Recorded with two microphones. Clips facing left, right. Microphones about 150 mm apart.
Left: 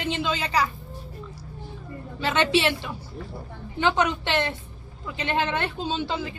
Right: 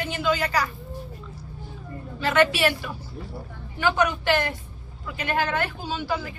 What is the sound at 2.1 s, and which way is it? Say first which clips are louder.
A woman's voice: right 1 dB; 25° left (ahead or behind).